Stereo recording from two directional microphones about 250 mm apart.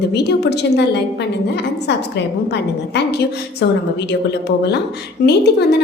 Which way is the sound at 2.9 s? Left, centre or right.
Left.